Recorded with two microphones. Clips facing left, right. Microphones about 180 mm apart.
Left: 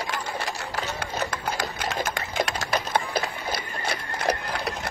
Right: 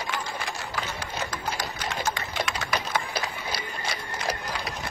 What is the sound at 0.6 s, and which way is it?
Sewing machine, 60° left (ahead or behind).